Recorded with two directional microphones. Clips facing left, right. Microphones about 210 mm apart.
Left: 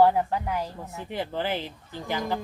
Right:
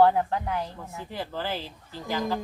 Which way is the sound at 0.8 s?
20° left (ahead or behind).